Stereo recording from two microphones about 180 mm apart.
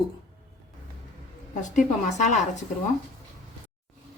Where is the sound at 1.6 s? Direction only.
40° left (ahead or behind).